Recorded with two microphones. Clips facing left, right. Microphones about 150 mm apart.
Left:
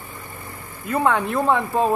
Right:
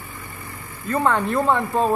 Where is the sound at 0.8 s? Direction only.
5° left (ahead or behind).